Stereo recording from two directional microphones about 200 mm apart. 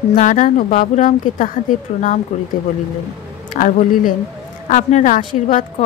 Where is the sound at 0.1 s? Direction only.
40° left (ahead or behind).